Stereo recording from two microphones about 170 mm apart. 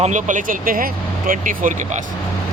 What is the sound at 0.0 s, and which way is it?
Speech, 45° right (ahead or behind).